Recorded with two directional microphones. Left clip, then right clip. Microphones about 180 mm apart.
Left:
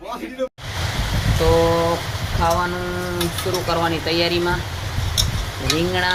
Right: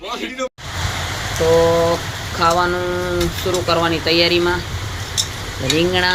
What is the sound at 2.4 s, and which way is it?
Speech, 25° right (ahead or behind).